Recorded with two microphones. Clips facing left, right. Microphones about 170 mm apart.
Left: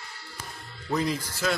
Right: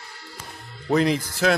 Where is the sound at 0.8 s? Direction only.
70° right (ahead or behind).